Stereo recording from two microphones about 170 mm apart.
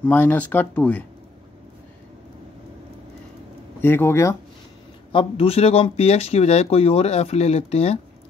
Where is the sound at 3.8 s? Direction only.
15° left (ahead or behind).